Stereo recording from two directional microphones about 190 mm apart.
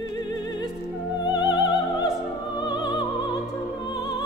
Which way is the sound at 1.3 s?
25° left (ahead or behind).